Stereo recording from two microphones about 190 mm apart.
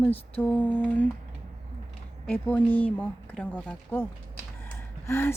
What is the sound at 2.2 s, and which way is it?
Speech, 5° left (ahead or behind).